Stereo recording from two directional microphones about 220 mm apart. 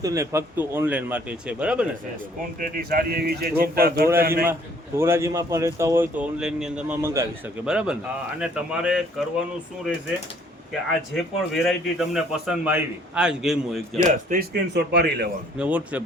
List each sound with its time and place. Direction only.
0.0 s speech: 15° right (ahead or behind)
2.6 s a man's voice: 40° right (ahead or behind)
4.9 s a man's voice: 10° right (ahead or behind)
11.1 s a man's voice: centre (ahead or behind)
14.3 s a man's voice: 45° right (ahead or behind)
15.5 s speech: 5° right (ahead or behind)